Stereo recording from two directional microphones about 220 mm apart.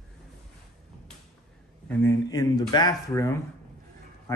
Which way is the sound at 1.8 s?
15° left (ahead or behind).